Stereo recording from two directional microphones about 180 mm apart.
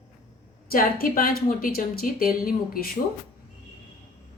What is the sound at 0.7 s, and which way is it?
A woman's voice, 55° left (ahead or behind).